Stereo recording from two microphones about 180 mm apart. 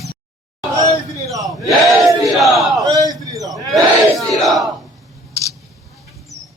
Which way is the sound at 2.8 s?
20° right (ahead or behind).